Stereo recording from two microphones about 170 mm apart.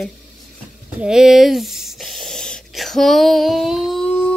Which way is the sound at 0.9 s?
5° right (ahead or behind).